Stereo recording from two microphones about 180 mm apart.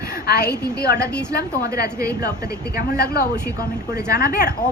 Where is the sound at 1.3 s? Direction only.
60° left (ahead or behind).